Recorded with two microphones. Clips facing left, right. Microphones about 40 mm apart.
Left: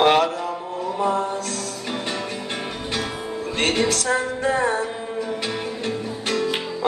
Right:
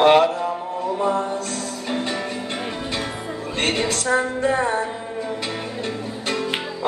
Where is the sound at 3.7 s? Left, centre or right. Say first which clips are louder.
Even; right.